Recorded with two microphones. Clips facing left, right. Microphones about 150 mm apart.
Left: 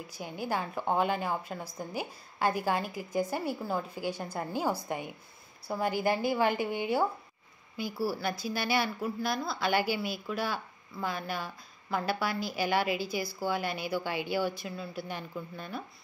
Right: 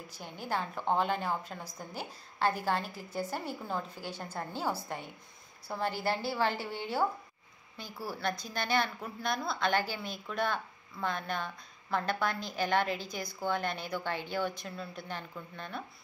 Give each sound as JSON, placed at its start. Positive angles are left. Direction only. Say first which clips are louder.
{"t": 0.1, "sound": "a woman's voice", "louder": "left 2 dB", "side_deg": 10}